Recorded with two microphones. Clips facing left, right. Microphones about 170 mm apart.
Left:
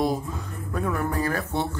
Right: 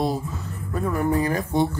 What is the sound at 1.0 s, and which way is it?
Speech, 15° right (ahead or behind).